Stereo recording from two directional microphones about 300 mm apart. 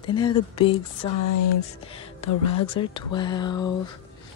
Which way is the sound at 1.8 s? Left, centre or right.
Centre.